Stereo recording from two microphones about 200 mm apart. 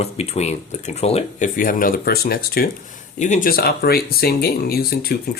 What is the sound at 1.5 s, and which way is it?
Speech, 45° left (ahead or behind).